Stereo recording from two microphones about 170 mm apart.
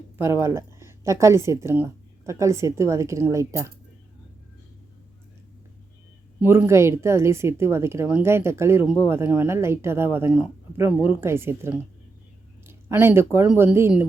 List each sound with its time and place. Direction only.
0.2 s a woman's voice: 15° right (ahead or behind)
6.4 s a woman's voice: 15° right (ahead or behind)